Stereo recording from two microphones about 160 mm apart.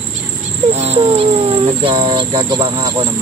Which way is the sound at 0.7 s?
40° right (ahead or behind).